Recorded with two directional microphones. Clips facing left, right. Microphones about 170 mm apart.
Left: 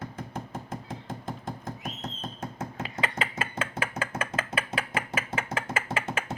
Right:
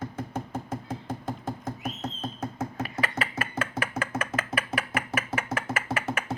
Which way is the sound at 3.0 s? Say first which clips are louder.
Left 1 dB; 25° left (ahead or behind).